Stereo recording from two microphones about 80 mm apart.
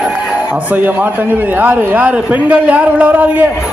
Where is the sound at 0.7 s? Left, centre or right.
Right.